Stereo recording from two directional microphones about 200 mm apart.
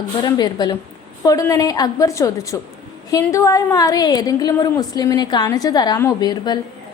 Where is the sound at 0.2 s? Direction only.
20° left (ahead or behind).